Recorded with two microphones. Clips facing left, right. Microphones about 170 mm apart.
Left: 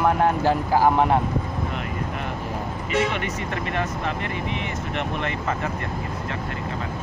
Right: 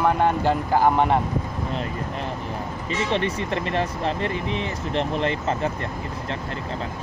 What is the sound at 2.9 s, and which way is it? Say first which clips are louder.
Speech: even; 30° right (ahead or behind).